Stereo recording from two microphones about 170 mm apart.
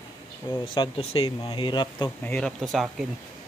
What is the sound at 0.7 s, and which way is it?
Speech, 30° left (ahead or behind).